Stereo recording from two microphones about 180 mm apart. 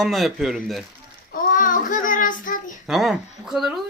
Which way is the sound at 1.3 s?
45° left (ahead or behind).